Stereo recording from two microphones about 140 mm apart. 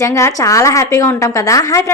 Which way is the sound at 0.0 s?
20° left (ahead or behind).